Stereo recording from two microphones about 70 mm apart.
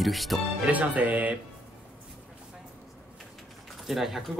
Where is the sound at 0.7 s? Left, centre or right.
Right.